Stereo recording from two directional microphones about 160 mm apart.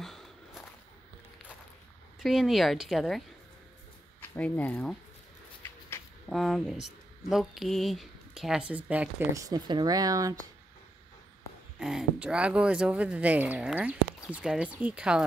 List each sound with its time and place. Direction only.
0.0 s walk: centre (ahead or behind)
2.1 s speech: centre (ahead or behind)
4.2 s speech: 10° left (ahead or behind)
5.6 s a sound: 15° left (ahead or behind)
6.2 s speech: centre (ahead or behind)
9.3 s speech: 20° right (ahead or behind)
11.8 s speech: 5° right (ahead or behind)